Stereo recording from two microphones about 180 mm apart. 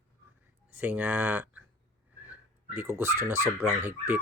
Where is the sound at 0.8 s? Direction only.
10° right (ahead or behind).